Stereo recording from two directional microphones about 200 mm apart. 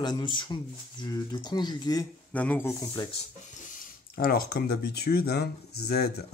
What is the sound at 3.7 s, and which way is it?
Speech, 45° left (ahead or behind).